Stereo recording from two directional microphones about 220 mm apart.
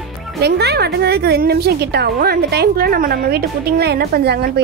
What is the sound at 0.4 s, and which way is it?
A woman's voice, 50° right (ahead or behind).